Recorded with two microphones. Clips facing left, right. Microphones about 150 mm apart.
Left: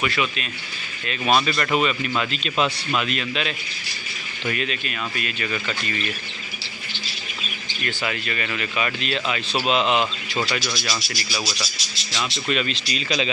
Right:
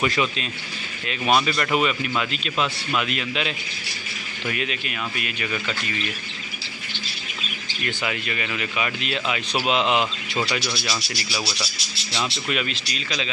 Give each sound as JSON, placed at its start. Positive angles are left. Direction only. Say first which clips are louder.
{"t": 0.0, "sound": "speech", "louder": "right 2 dB", "side_deg": -30}
{"t": 1.0, "sound": "speech", "louder": "even", "side_deg": -15}
{"t": 2.5, "sound": "speech", "louder": "left 3 dB", "side_deg": 25}
{"t": 3.0, "sound": "speech", "louder": "even", "side_deg": -15}
{"t": 7.8, "sound": "speech", "louder": "even", "side_deg": -15}